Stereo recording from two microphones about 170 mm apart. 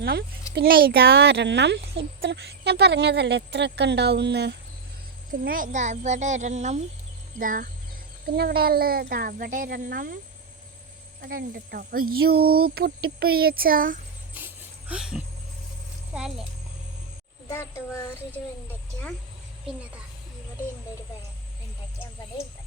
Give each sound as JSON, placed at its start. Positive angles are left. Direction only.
{"t": 0.0, "sound": "a child's voice", "side_deg": -70}
{"t": 0.5, "sound": "a child's voice", "side_deg": -60}
{"t": 5.5, "sound": "speech", "side_deg": -55}
{"t": 8.4, "sound": "speech", "side_deg": -65}
{"t": 11.2, "sound": "speech", "side_deg": -65}
{"t": 14.3, "sound": "a sound", "side_deg": -10}
{"t": 16.1, "sound": "speech", "side_deg": -5}
{"t": 17.5, "sound": "speech", "side_deg": 15}